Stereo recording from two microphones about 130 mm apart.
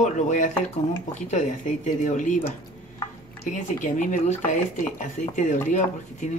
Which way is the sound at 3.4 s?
75° left (ahead or behind).